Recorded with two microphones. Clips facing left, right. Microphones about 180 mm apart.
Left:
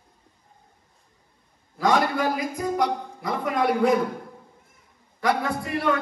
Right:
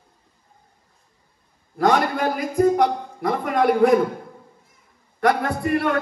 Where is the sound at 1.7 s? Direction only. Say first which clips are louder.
Right 3 dB; 60° right (ahead or behind).